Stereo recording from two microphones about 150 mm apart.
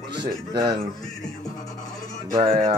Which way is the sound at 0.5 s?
30° right (ahead or behind).